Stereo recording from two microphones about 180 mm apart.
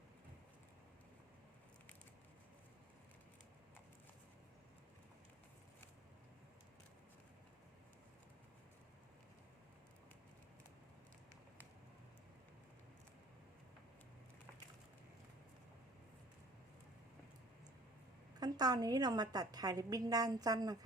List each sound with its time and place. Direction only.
18.3 s a woman's voice: 20° right (ahead or behind)